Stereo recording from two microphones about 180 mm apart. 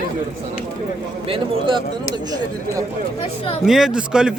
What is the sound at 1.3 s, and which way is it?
Speech, 30° right (ahead or behind).